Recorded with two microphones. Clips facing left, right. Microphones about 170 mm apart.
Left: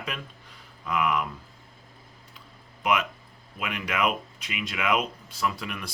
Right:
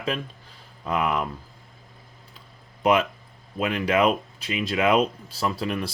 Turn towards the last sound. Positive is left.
turn(degrees=-30)  # may be behind; listen again after turning